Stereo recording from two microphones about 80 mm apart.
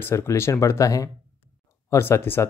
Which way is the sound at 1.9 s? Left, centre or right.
Left.